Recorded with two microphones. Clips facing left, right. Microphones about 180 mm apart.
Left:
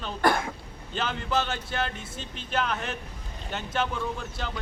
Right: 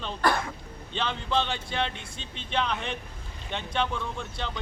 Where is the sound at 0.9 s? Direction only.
5° left (ahead or behind).